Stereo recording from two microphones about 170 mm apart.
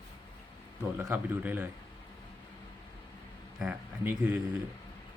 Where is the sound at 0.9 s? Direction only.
10° right (ahead or behind).